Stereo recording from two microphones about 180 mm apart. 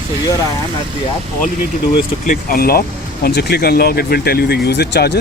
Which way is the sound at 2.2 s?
55° left (ahead or behind).